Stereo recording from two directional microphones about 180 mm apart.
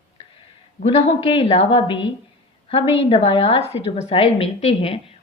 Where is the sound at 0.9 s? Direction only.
35° left (ahead or behind).